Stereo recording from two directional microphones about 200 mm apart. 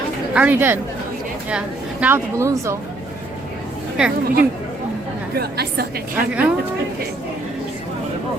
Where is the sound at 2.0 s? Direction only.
10° right (ahead or behind).